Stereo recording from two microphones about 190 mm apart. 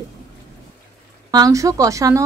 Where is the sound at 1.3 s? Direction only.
20° right (ahead or behind).